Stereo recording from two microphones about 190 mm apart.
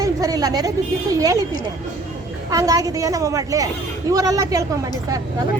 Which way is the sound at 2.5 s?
20° right (ahead or behind).